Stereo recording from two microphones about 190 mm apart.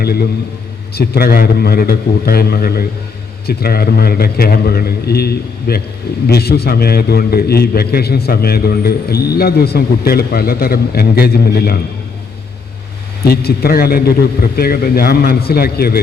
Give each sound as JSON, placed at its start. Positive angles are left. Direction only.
{"t": 0.0, "sound": "a man's voice", "side_deg": 55}
{"t": 13.2, "sound": "a man's voice", "side_deg": 55}